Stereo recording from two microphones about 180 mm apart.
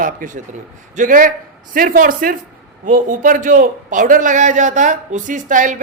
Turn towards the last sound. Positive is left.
turn(degrees=-45)  # may be behind; listen again after turning